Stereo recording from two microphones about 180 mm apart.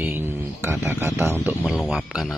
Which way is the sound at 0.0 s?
10° right (ahead or behind).